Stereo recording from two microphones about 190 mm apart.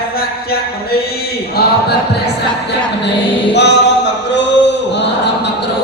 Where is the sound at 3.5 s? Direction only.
65° left (ahead or behind).